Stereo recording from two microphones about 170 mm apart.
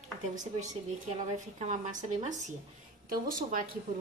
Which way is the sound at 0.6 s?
45° right (ahead or behind).